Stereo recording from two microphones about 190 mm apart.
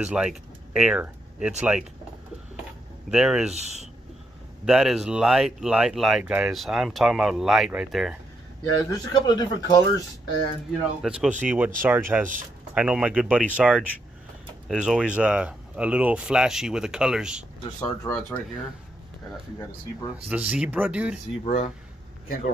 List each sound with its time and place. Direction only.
0.0 s speech: 5° right (ahead or behind)
3.1 s speech: 5° right (ahead or behind)
3.5 s speech: 35° right (ahead or behind)
4.6 s speech: centre (ahead or behind)
8.7 s speech: 20° left (ahead or behind)
11.0 s speech: 5° right (ahead or behind)
17.7 s speech: 10° left (ahead or behind)
20.2 s speech: 5° right (ahead or behind)